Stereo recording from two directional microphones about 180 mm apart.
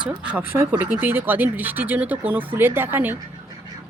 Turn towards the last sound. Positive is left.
turn(degrees=-10)  # may be behind; listen again after turning